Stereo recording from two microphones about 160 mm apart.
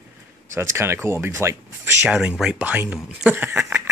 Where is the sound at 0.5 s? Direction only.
15° right (ahead or behind).